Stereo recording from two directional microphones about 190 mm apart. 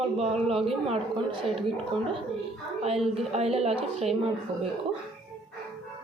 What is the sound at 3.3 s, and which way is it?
Speech, 30° right (ahead or behind).